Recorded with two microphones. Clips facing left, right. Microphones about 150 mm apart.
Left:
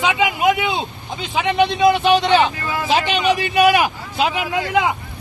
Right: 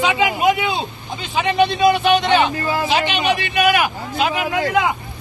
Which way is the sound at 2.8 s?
40° left (ahead or behind).